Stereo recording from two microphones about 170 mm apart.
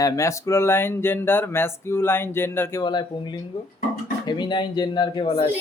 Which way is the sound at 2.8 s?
25° left (ahead or behind).